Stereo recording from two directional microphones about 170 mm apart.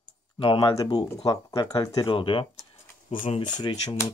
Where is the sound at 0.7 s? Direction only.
20° left (ahead or behind).